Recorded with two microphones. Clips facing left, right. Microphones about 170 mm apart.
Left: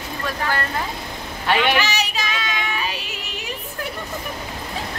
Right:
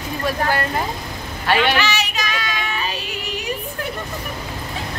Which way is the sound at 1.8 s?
35° left (ahead or behind).